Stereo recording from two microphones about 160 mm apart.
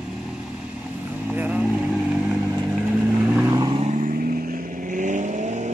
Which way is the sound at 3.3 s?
20° right (ahead or behind).